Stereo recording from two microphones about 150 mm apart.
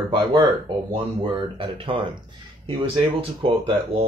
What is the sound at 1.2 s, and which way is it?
Speech, 35° right (ahead or behind).